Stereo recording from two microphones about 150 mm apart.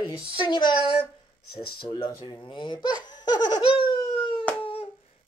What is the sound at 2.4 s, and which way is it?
Speech, 30° left (ahead or behind).